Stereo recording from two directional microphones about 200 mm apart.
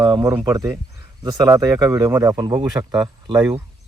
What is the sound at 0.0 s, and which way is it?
Speech, 20° right (ahead or behind).